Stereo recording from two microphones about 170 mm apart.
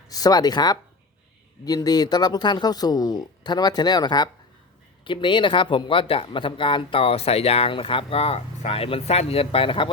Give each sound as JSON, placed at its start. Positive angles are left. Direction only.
{"t": 0.1, "sound": "speech", "side_deg": 20}